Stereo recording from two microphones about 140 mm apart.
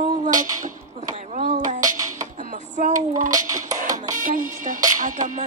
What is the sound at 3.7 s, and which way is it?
Music, 65° right (ahead or behind).